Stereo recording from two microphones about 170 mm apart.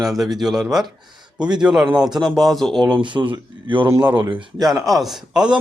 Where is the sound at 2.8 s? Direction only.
25° right (ahead or behind).